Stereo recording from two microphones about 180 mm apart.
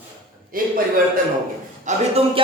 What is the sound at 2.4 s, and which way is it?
Music, 30° right (ahead or behind).